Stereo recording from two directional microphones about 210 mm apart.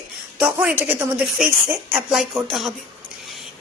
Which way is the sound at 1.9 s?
5° right (ahead or behind).